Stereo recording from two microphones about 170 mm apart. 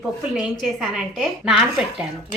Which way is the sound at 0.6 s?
Centre (ahead or behind).